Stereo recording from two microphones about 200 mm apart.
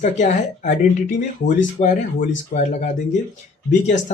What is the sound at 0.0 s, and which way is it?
Speech, 35° left (ahead or behind).